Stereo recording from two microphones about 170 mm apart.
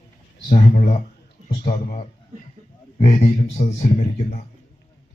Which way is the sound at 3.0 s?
45° left (ahead or behind).